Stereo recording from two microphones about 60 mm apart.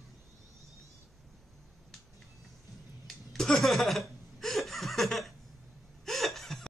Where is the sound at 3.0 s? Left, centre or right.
Centre.